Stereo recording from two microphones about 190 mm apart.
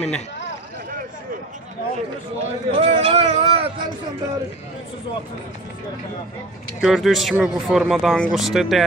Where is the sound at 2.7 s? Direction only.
30° right (ahead or behind).